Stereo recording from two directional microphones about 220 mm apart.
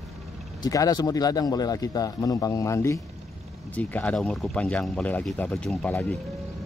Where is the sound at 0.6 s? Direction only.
15° left (ahead or behind).